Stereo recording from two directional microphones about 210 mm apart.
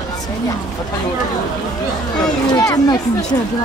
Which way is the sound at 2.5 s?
20° left (ahead or behind).